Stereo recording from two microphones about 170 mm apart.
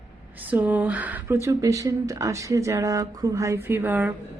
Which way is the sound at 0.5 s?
10° right (ahead or behind).